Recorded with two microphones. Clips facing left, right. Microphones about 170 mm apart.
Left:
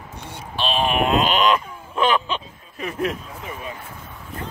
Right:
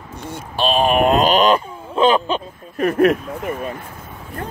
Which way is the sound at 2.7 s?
65° right (ahead or behind).